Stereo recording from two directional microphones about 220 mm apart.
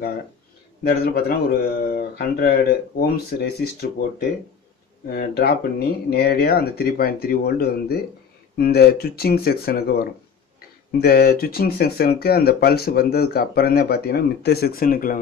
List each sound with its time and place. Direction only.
0.8 s speech: 45° left (ahead or behind)
5.1 s speech: 45° left (ahead or behind)